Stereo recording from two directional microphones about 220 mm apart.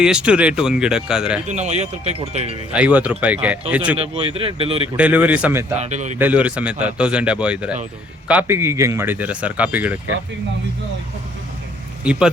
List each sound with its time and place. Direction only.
0.0 s a man's voice: 5° right (ahead or behind)
1.5 s speech: 30° right (ahead or behind)
2.7 s speech: 5° right (ahead or behind)
3.9 s speech: 25° right (ahead or behind)
4.9 s speech: 5° right (ahead or behind)
5.7 s speech: 30° right (ahead or behind)
6.1 s a man's voice: 5° right (ahead or behind)
12.1 s a man's voice: 5° right (ahead or behind)